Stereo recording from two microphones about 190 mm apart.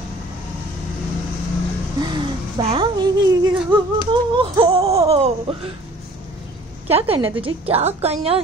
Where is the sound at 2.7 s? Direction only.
25° right (ahead or behind).